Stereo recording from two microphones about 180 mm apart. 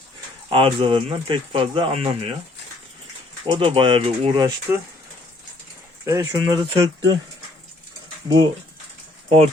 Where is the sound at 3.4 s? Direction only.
30° right (ahead or behind).